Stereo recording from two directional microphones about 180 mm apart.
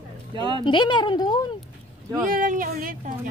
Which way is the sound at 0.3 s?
25° right (ahead or behind).